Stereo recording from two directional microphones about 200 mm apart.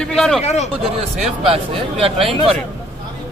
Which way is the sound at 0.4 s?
35° left (ahead or behind).